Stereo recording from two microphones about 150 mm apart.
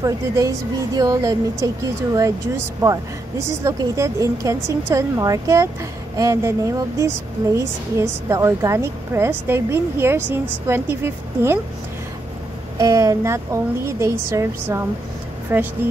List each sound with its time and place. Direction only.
0.0 s a woman's voice: 20° right (ahead or behind)
12.7 s a woman's voice: 25° right (ahead or behind)